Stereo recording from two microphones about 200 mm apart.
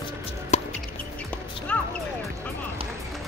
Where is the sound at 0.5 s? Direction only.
35° left (ahead or behind).